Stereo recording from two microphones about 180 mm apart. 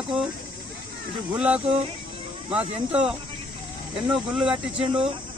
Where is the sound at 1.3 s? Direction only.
5° right (ahead or behind).